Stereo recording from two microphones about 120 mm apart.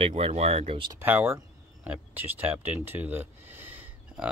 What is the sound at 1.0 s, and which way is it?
Speech, 15° right (ahead or behind).